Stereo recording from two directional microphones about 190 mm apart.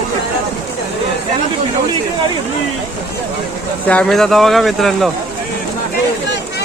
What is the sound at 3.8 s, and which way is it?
Speech, 5° left (ahead or behind).